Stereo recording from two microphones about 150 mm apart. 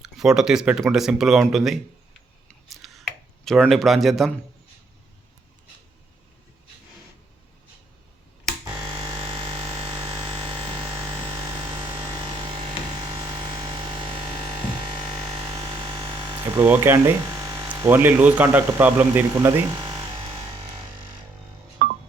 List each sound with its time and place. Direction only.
0.0 s speech: 5° right (ahead or behind)
2.6 s a sound: centre (ahead or behind)
8.6 s music: 30° right (ahead or behind)
10.0 s a sound: 35° right (ahead or behind)
15.1 s hum: 40° right (ahead or behind)
16.6 s speech: 15° right (ahead or behind)
17.2 s electric shaver: 30° right (ahead or behind)
17.9 s speech: 10° right (ahead or behind)
19.7 s electric shaver: 35° right (ahead or behind)
21.8 s music: 90° right